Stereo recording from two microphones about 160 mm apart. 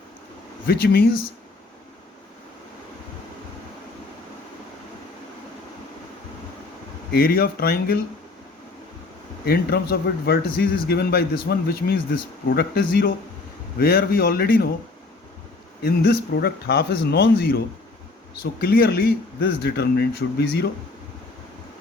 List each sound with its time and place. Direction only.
0.7 s a man's voice: 70° left (ahead or behind)
7.1 s a man's voice: 65° left (ahead or behind)
9.5 s a man's voice: 75° left (ahead or behind)
15.8 s speech: 75° left (ahead or behind)
18.6 s speech: 75° left (ahead or behind)